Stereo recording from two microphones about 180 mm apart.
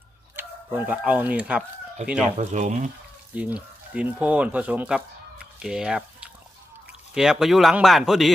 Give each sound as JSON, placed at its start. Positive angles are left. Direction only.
{"t": 0.3, "sound": "speech", "side_deg": -10}
{"t": 2.4, "sound": "speech", "side_deg": -40}
{"t": 3.3, "sound": "speech", "side_deg": -5}